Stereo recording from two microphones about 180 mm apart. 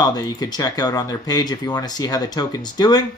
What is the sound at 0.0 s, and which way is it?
Speech, 20° left (ahead or behind).